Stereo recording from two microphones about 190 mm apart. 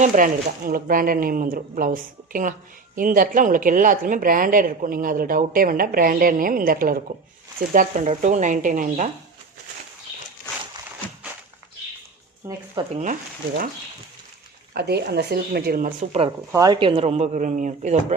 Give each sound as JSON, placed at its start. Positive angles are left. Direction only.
{"t": 0.0, "sound": "speech", "side_deg": -45}
{"t": 12.4, "sound": "speech", "side_deg": -15}
{"t": 12.9, "sound": "speech", "side_deg": -40}
{"t": 14.7, "sound": "speech", "side_deg": -55}
{"t": 16.5, "sound": "speech", "side_deg": -20}